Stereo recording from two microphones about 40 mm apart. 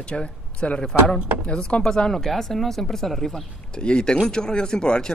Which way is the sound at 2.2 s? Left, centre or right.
Centre.